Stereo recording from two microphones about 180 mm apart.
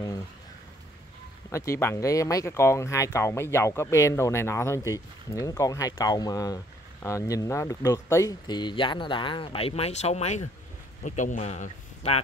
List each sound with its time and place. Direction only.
1.5 s a man's voice: 15° left (ahead or behind); by 12.2 s 35° left (ahead or behind)